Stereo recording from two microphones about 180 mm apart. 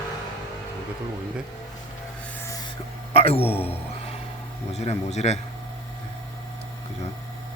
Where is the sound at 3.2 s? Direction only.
35° left (ahead or behind).